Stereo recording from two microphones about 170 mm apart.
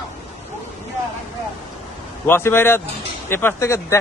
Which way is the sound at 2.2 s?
15° left (ahead or behind).